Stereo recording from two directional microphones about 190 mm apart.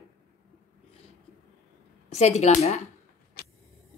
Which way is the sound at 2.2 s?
35° left (ahead or behind).